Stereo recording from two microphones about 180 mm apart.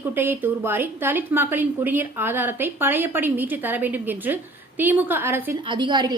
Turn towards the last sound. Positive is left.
turn(degrees=-25)  # may be behind; listen again after turning